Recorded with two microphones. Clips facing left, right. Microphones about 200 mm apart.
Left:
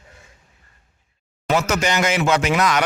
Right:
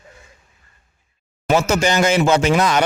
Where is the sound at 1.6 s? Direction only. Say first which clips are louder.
Right 4 dB; 25° right (ahead or behind).